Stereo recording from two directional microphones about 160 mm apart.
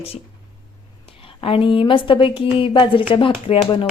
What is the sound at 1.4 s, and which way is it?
Speech, 35° left (ahead or behind).